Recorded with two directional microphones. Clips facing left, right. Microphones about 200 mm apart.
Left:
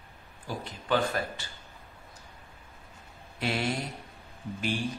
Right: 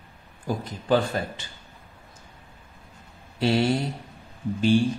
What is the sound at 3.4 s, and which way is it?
Speech, 30° right (ahead or behind).